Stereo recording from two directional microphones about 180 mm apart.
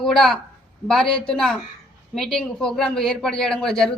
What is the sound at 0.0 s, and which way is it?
A woman's voice, centre (ahead or behind).